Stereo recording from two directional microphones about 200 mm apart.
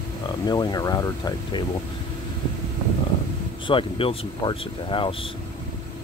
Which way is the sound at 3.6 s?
25° left (ahead or behind).